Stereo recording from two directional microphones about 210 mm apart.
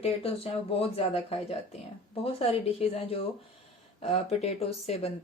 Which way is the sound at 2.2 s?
30° left (ahead or behind).